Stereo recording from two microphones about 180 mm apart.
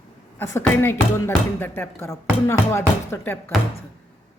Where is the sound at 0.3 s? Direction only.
15° left (ahead or behind).